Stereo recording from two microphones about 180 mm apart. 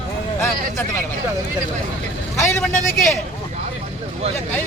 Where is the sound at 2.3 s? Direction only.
15° left (ahead or behind).